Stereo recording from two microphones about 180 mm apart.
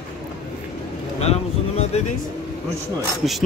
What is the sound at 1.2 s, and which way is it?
Speech, 35° left (ahead or behind).